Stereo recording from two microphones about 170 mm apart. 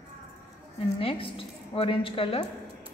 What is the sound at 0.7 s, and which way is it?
A woman's voice, 35° left (ahead or behind).